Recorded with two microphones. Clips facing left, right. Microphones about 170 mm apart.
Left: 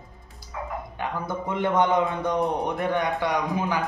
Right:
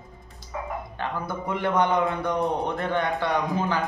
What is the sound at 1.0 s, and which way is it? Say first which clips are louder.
A man's voice: left 1 dB; 20° left (ahead or behind).